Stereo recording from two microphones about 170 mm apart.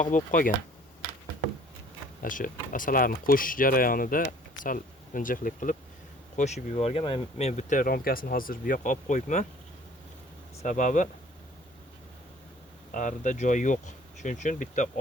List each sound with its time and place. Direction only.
0.0 s speech: 50° left (ahead or behind)
2.2 s speech: 50° left (ahead or behind)
10.6 s speech: 45° left (ahead or behind)
12.9 s speech: 50° left (ahead or behind)